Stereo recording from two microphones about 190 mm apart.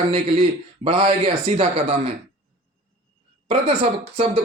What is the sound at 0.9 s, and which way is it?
Speech, 30° right (ahead or behind).